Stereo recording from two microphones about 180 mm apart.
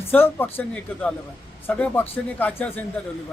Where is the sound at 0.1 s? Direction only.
10° left (ahead or behind).